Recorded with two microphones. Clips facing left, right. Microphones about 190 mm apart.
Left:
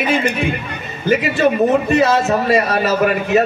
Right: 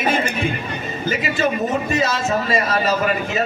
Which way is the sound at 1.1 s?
60° left (ahead or behind).